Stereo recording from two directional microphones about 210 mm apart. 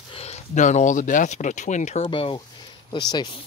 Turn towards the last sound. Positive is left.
turn(degrees=20)  # may be behind; listen again after turning